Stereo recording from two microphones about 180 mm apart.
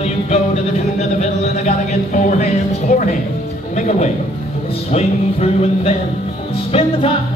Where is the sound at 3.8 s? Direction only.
40° left (ahead or behind).